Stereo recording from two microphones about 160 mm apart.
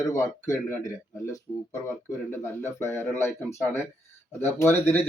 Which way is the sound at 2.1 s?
15° left (ahead or behind).